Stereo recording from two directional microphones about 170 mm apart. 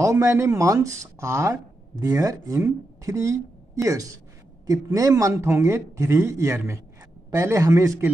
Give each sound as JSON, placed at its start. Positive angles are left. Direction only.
{"t": 0.0, "sound": "speech", "side_deg": -20}